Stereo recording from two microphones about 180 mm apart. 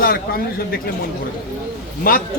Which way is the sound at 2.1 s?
50° left (ahead or behind).